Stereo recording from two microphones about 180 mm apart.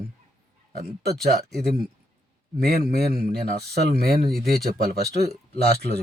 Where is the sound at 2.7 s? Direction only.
60° right (ahead or behind).